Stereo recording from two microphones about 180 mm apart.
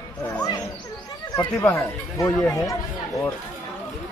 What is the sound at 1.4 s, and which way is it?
Speech, 15° left (ahead or behind).